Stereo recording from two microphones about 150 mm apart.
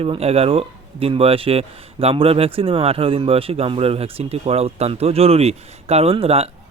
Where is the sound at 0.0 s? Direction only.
40° right (ahead or behind).